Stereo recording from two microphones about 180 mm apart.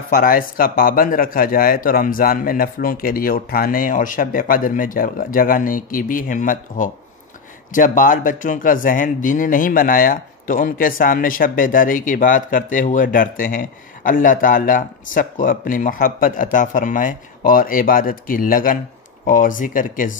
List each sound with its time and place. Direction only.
0.1 s speech: 50° left (ahead or behind)